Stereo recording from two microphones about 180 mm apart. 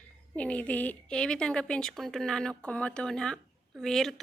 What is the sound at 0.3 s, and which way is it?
A woman's voice, 5° left (ahead or behind).